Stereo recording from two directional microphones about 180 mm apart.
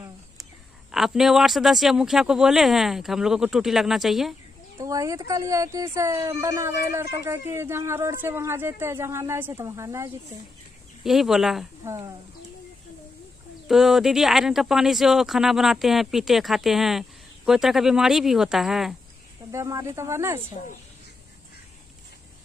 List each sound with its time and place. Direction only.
0.9 s speech: centre (ahead or behind)
4.7 s speech: 20° right (ahead or behind)
11.1 s speech: centre (ahead or behind)
11.8 s speech: 15° right (ahead or behind)
13.7 s speech: centre (ahead or behind)
19.5 s speech: 15° right (ahead or behind)